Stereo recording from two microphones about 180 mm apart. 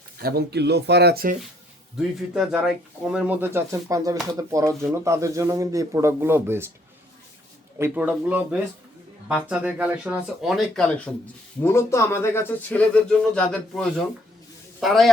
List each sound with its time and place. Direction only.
0.2 s speech: 60° right (ahead or behind)
2.0 s speech: centre (ahead or behind)
7.8 s speech: 10° right (ahead or behind)